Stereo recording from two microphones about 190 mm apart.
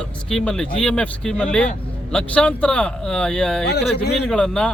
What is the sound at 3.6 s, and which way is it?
Speech, 60° left (ahead or behind).